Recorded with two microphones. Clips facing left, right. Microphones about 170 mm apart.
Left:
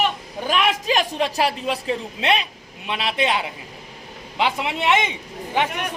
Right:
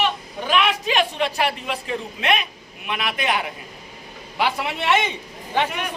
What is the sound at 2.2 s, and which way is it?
A man's voice, 30° left (ahead or behind).